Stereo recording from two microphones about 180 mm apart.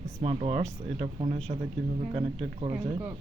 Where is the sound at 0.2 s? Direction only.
35° right (ahead or behind).